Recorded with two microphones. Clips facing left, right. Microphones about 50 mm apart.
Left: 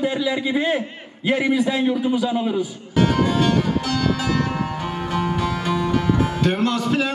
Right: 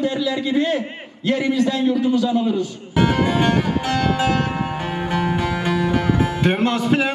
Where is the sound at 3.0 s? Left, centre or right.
Right.